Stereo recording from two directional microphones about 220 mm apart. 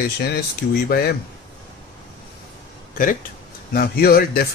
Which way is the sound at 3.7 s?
45° left (ahead or behind).